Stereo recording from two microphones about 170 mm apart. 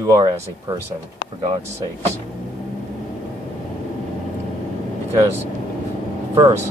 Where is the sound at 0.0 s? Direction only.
20° right (ahead or behind).